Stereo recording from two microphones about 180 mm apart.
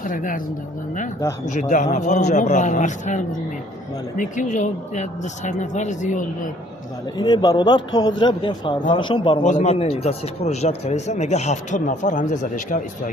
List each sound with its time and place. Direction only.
0.0 s speech: 50° left (ahead or behind)
1.5 s speech: 45° left (ahead or behind)
7.2 s a man's voice: 25° left (ahead or behind)
9.4 s a man's voice: 40° left (ahead or behind)